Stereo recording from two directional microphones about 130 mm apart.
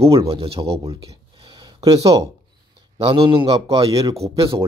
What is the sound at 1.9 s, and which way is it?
Speech, 50° right (ahead or behind).